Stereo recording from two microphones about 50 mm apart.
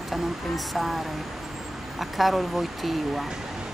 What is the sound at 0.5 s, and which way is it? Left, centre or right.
Speech, centre.